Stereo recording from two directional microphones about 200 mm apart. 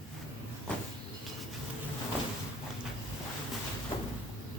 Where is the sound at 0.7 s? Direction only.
5° left (ahead or behind).